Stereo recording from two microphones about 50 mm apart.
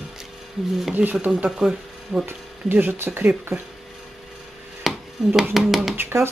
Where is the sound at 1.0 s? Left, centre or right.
Centre.